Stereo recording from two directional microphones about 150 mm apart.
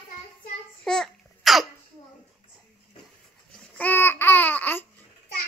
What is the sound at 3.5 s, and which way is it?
Babbling, 10° left (ahead or behind).